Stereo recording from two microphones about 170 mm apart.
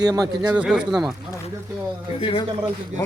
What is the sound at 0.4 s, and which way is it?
Speech, 5° right (ahead or behind).